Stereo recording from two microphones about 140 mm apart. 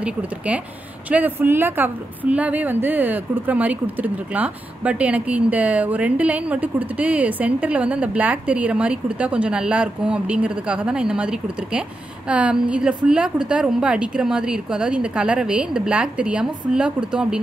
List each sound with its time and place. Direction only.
0.0 s a woman's voice: 10° right (ahead or behind)